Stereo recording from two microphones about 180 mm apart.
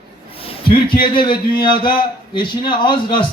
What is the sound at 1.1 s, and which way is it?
Speech, 25° left (ahead or behind).